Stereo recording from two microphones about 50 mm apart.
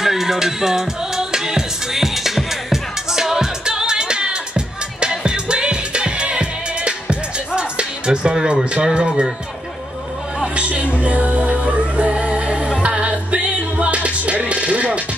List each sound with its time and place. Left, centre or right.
0.0 s music: centre
10.4 s music: right